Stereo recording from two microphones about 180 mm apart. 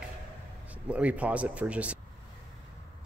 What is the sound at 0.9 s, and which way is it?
Speech, 10° right (ahead or behind).